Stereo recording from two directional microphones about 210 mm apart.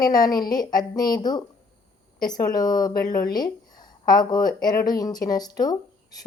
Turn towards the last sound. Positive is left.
turn(degrees=20)  # may be behind; listen again after turning